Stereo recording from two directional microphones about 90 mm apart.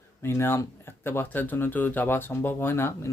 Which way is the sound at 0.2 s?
30° left (ahead or behind).